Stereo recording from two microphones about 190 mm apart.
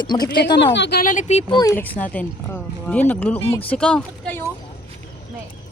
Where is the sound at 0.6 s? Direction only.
65° left (ahead or behind).